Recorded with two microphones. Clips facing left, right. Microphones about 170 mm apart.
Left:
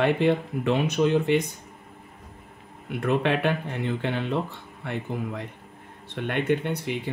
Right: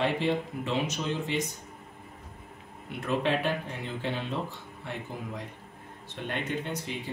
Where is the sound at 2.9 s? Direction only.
60° left (ahead or behind).